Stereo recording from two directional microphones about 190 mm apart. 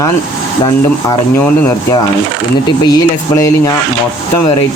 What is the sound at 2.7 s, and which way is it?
Speech, 20° left (ahead or behind).